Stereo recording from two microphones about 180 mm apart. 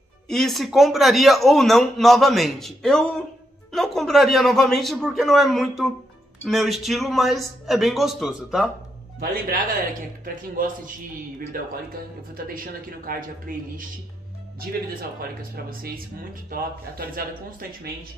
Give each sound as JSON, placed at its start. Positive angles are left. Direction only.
{"t": 0.3, "sound": "a man's voice", "side_deg": 0}
{"t": 9.2, "sound": "speech", "side_deg": -55}
{"t": 10.6, "sound": "speech", "side_deg": -50}
{"t": 12.5, "sound": "speech", "side_deg": -50}
{"t": 15.0, "sound": "speech", "side_deg": -55}